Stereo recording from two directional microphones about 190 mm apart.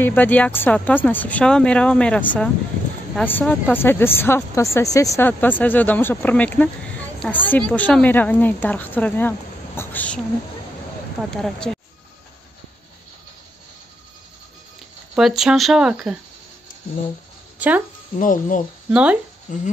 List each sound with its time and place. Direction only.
0.0 s speech: 10° left (ahead or behind)
15.1 s speech: centre (ahead or behind)
17.6 s speech: 10° right (ahead or behind)
18.1 s speech: 45° left (ahead or behind)
18.9 s speech: 5° right (ahead or behind)
19.5 s speech: 40° left (ahead or behind)